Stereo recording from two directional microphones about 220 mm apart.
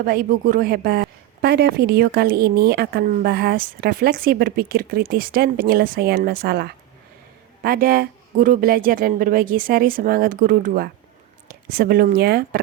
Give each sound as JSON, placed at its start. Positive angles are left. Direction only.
{"t": 0.0, "sound": "a woman's voice", "side_deg": -40}